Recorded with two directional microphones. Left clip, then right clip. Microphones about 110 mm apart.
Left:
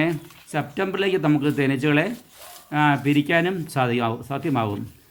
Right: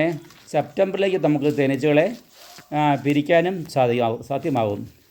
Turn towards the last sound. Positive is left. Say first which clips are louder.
# right 3 dB
turn(degrees=-25)  # may be behind; listen again after turning